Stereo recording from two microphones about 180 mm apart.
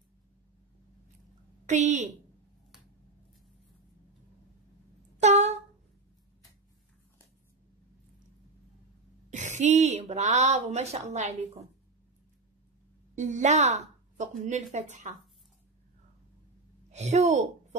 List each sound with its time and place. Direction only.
1.7 s speech: 40° right (ahead or behind)
5.1 s a sound: 40° right (ahead or behind)
9.3 s speech: 40° right (ahead or behind)
13.1 s a woman's voice: 45° right (ahead or behind)
16.9 s speech: 40° right (ahead or behind)